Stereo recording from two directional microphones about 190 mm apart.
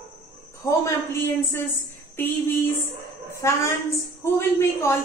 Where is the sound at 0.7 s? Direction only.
15° left (ahead or behind).